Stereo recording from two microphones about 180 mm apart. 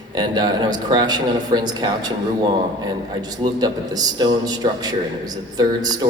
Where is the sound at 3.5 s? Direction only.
20° right (ahead or behind).